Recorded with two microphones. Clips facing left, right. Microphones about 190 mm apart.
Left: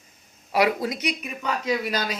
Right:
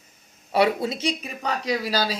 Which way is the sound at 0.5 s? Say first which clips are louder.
Right 1 dB; 30° right (ahead or behind).